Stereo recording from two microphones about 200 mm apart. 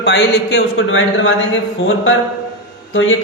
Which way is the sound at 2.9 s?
75° left (ahead or behind).